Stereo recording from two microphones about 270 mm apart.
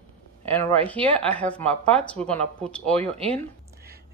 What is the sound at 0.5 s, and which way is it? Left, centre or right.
Speech, centre.